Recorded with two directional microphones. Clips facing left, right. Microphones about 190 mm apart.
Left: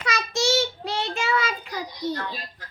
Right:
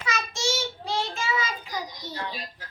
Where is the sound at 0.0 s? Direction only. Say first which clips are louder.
Left 4 dB; 65° left (ahead or behind).